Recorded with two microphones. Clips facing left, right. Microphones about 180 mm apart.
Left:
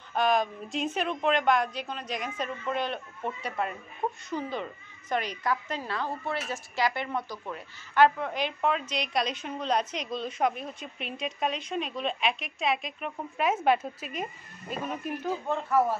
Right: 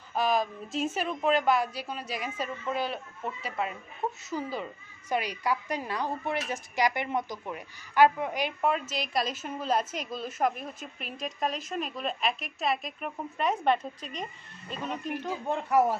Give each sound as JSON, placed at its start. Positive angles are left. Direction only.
{"t": 0.1, "sound": "a woman's voice", "side_deg": 0}
{"t": 15.4, "sound": "speech", "side_deg": -15}